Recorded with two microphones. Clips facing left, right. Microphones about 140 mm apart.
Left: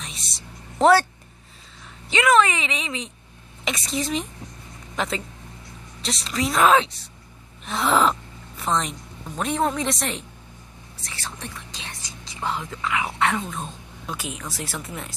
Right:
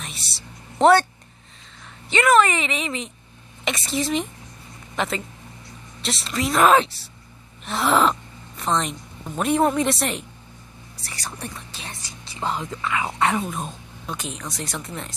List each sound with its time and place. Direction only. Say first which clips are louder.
0.2 s a sound: even; 30° right (ahead or behind)
0.7 s speech: right 1 dB; centre (ahead or behind)
2.0 s speech: right 1 dB; centre (ahead or behind); by 13.7 s 15° right (ahead or behind)
14.0 s speech: right 1 dB; 5° left (ahead or behind)